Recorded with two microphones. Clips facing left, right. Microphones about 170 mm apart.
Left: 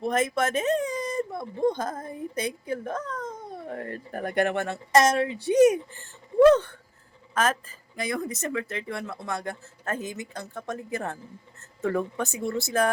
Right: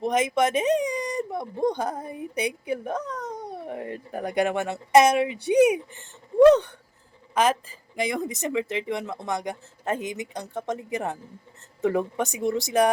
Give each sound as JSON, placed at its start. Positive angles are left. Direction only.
{"t": 0.0, "sound": "speech", "side_deg": -15}